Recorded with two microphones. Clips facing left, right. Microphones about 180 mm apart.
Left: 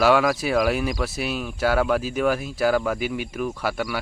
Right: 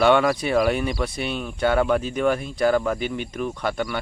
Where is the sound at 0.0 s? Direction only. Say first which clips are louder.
Right 1 dB; centre (ahead or behind).